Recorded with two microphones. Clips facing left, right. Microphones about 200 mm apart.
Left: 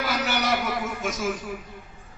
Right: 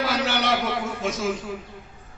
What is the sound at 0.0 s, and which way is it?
A man's voice, 30° right (ahead or behind).